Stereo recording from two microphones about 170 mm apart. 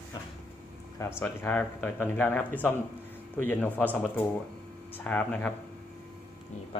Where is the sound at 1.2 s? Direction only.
10° left (ahead or behind).